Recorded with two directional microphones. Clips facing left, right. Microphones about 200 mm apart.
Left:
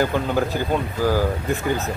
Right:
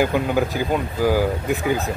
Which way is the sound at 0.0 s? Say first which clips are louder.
Right 1 dB; 10° right (ahead or behind).